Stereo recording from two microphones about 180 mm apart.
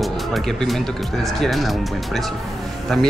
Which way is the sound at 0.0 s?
Centre (ahead or behind).